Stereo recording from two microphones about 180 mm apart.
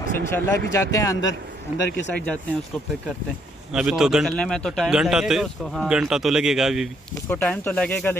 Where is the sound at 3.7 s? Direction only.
5° right (ahead or behind).